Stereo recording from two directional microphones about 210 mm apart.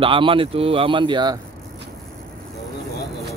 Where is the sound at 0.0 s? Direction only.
25° right (ahead or behind).